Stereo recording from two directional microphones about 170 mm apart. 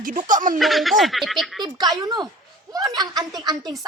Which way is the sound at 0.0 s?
50° right (ahead or behind).